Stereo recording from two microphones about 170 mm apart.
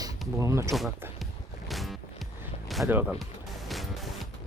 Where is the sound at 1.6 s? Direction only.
Centre (ahead or behind).